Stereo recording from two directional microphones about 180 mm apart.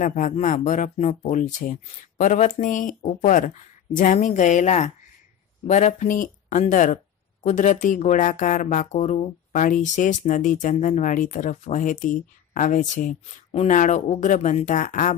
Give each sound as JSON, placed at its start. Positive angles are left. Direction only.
{"t": 0.0, "sound": "speech", "side_deg": 45}